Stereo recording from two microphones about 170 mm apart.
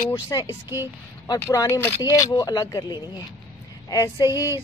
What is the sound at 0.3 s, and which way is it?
Speech, 20° left (ahead or behind).